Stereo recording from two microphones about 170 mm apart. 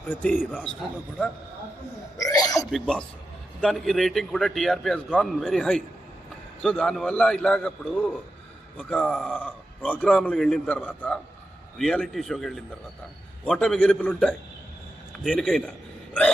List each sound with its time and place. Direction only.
0.1 s a man's voice: 10° left (ahead or behind)
2.1 s hiccup: 20° left (ahead or behind)
2.6 s a man's voice: centre (ahead or behind)